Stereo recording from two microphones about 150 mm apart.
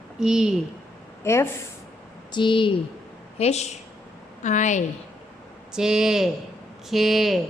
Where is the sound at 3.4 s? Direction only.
45° left (ahead or behind).